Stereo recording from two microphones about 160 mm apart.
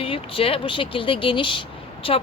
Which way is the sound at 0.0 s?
35° left (ahead or behind).